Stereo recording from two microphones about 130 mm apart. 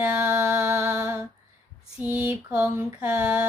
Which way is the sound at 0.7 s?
25° right (ahead or behind).